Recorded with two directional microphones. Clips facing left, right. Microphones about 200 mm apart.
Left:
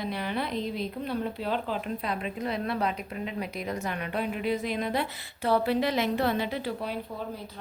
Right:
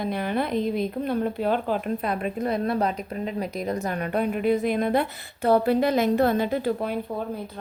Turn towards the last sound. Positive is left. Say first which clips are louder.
# right 7 dB
turn(degrees=-50)  # may be behind; listen again after turning